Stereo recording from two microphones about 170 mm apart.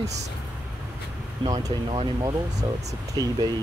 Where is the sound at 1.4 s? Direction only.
25° right (ahead or behind).